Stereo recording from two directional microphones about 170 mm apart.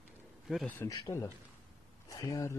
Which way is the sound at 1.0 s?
20° left (ahead or behind).